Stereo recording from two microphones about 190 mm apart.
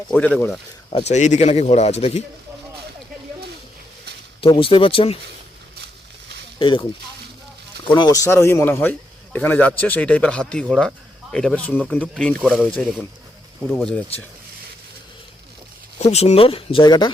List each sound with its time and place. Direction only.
0.3 s a man's voice: 10° left (ahead or behind)
0.9 s speech: 30° left (ahead or behind)
4.4 s speech: 30° left (ahead or behind)
6.6 s speech: 25° left (ahead or behind)
7.9 s a man's voice: 20° left (ahead or behind); by 14.0 s 5° left (ahead or behind)
16.0 s speech: 35° left (ahead or behind)